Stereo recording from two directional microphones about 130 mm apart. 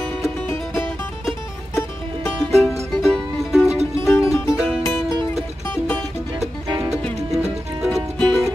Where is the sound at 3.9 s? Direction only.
20° left (ahead or behind).